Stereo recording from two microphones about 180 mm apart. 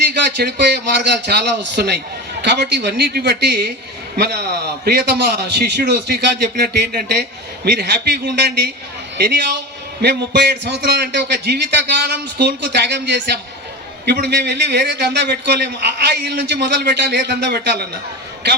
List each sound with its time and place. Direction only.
0.1 s a man's voice: 70° right (ahead or behind)